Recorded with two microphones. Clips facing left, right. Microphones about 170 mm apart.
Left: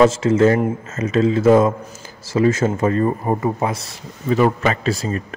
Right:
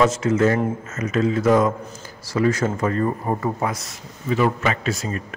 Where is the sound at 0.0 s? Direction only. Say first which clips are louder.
Left 4 dB; 30° left (ahead or behind).